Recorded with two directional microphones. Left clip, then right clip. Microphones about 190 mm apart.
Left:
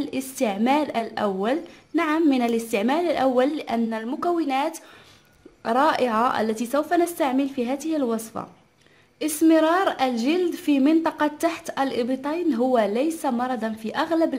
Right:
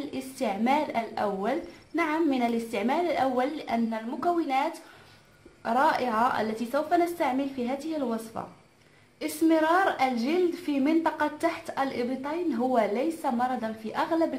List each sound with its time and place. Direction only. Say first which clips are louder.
0.1 s a woman's voice: left 2 dB; 45° left (ahead or behind)